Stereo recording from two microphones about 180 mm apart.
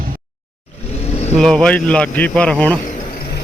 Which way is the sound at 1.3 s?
5° left (ahead or behind).